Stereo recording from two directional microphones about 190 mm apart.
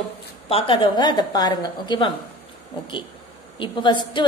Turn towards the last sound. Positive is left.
turn(degrees=25)  # may be behind; listen again after turning